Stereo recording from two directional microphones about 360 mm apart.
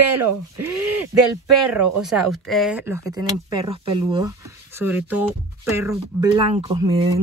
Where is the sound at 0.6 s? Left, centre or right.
Right.